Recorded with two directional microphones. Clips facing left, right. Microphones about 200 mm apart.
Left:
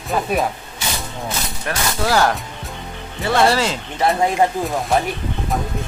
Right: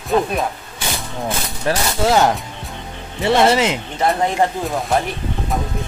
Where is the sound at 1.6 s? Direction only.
25° right (ahead or behind).